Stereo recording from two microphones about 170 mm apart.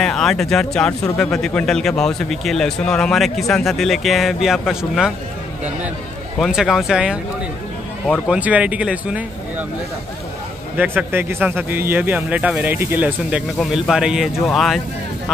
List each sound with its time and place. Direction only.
0.0 s speech: centre (ahead or behind)
6.4 s speech: centre (ahead or behind)
8.3 s speech: 10° right (ahead or behind)
10.8 s speech: 10° right (ahead or behind)